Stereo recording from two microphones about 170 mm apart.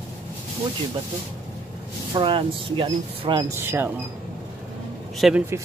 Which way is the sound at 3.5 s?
15° right (ahead or behind).